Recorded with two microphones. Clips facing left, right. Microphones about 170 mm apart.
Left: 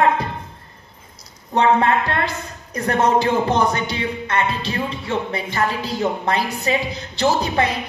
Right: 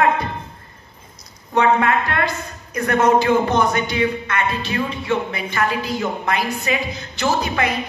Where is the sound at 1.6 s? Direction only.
30° left (ahead or behind).